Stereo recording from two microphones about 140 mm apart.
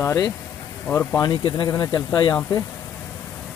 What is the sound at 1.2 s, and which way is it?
Speech, 30° left (ahead or behind).